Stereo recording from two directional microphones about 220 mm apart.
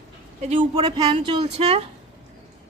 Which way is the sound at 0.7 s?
20° right (ahead or behind).